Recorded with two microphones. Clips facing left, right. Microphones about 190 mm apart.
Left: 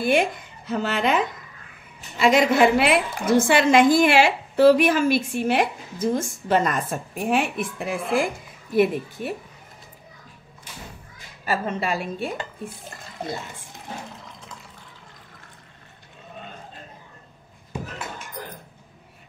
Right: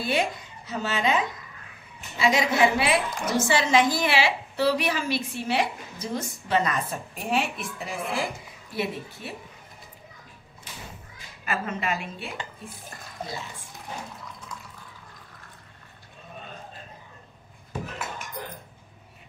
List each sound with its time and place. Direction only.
0.0 s a woman's voice: 55° left (ahead or behind)
11.4 s speech: 35° left (ahead or behind)